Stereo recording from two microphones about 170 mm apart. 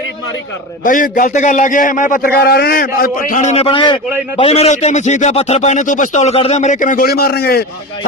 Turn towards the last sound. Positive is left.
turn(degrees=65)  # may be behind; listen again after turning